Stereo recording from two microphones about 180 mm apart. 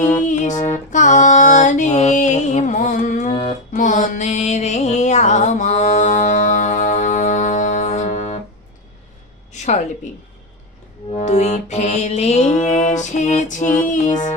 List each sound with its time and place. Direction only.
0.0 s music: 45° left (ahead or behind)
9.5 s a sound: 40° left (ahead or behind)
11.1 s music: 40° left (ahead or behind)